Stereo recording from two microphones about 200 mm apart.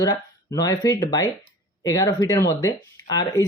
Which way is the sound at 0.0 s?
20° left (ahead or behind).